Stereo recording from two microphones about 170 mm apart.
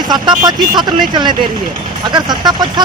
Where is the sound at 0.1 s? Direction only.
25° right (ahead or behind).